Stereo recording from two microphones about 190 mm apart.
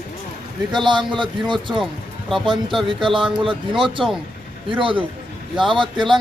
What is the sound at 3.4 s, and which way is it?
Speech, 25° right (ahead or behind).